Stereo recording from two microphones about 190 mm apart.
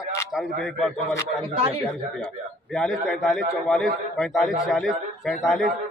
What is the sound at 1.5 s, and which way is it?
Speech, 30° right (ahead or behind).